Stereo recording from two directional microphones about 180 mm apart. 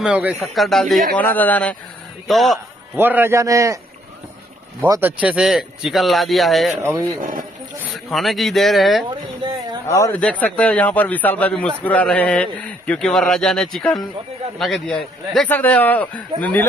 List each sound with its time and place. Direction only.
0.0 s a man's voice: 5° right (ahead or behind)
3.0 s a man's voice: 10° right (ahead or behind)
5.0 s a man's voice: 5° right (ahead or behind)
6.8 s a man's voice: 15° right (ahead or behind)
7.8 s a man's voice: centre (ahead or behind)
9.8 s a man's voice: 15° left (ahead or behind)